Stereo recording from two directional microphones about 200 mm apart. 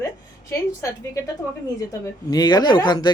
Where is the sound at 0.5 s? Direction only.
15° left (ahead or behind).